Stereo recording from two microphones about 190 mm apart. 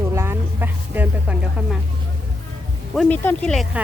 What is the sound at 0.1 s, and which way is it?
Music, 15° right (ahead or behind).